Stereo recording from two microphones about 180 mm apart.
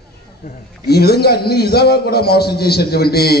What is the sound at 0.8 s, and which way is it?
A man's voice, 60° left (ahead or behind).